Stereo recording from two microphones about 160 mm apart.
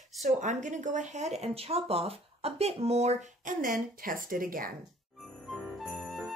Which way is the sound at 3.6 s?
60° right (ahead or behind).